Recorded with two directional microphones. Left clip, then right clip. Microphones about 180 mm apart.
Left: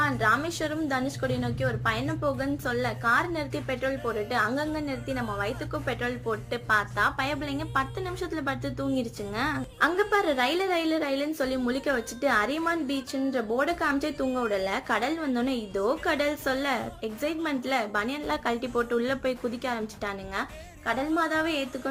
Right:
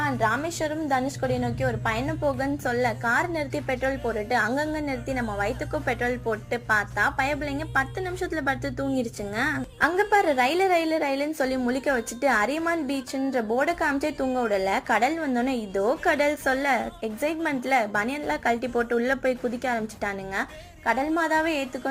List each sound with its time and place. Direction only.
0.0 s a woman's voice: 15° right (ahead or behind)